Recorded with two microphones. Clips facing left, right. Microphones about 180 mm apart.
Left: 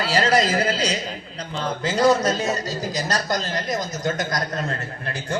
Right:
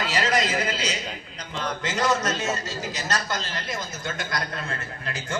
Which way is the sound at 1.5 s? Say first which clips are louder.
Left 5 dB; 30° left (ahead or behind).